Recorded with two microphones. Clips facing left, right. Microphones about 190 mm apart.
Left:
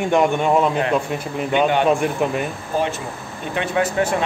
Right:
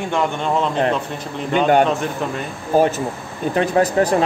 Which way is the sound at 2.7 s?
40° right (ahead or behind).